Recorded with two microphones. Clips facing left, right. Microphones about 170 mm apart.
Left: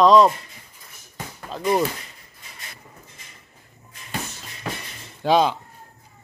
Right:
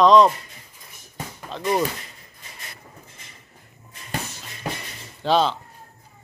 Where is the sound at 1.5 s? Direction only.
5° left (ahead or behind).